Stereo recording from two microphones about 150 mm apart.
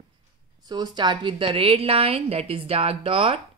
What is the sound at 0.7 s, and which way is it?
A woman's voice, 30° right (ahead or behind).